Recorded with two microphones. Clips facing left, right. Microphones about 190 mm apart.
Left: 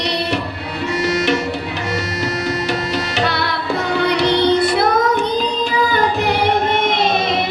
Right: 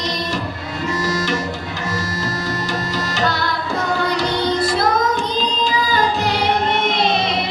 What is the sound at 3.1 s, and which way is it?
Tabla, 65° left (ahead or behind).